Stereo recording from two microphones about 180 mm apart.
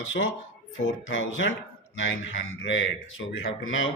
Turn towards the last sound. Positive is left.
turn(degrees=90)